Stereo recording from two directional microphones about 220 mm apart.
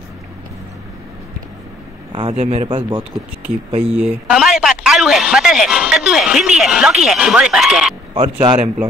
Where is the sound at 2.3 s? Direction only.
25° right (ahead or behind).